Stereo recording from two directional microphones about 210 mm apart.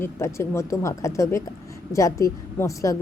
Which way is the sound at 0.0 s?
15° left (ahead or behind).